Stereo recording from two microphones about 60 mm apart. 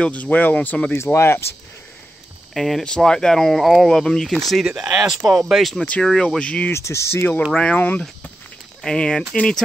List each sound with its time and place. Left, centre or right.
0.0 s speech: left
0.9 s speech: left
2.5 s speech: centre
4.6 s speech: centre
5.8 s speech: left
6.7 s speech: left
7.5 s speech: left
8.8 s speech: centre